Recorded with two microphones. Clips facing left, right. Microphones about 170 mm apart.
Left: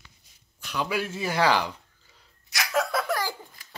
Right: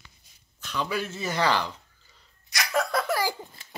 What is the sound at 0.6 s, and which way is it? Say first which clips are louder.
Speech: left 1 dB; 10° left (ahead or behind).